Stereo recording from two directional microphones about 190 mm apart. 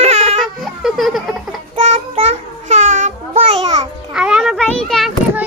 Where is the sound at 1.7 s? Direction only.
30° right (ahead or behind).